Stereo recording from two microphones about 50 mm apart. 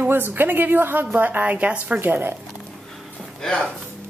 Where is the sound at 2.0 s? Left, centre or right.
Right.